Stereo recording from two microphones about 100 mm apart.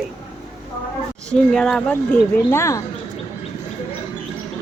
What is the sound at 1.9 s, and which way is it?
Speech, 25° left (ahead or behind).